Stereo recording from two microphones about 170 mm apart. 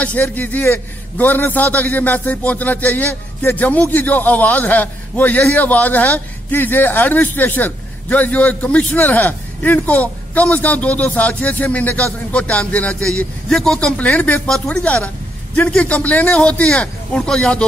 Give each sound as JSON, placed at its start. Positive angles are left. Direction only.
{"t": 0.0, "sound": "a man's voice", "side_deg": 10}